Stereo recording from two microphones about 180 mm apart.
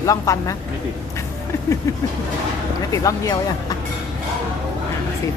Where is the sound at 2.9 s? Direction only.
20° left (ahead or behind).